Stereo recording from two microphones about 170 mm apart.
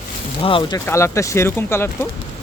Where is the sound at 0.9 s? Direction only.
15° left (ahead or behind).